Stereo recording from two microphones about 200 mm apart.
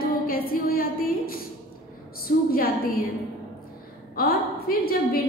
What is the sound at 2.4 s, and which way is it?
Speech, 45° left (ahead or behind).